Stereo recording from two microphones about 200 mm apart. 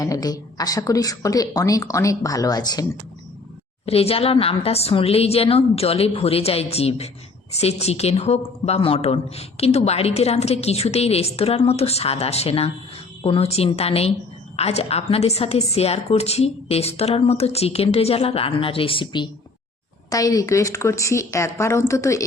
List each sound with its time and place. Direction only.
0.0 s speech: 20° left (ahead or behind)
3.8 s a woman's voice: 30° left (ahead or behind)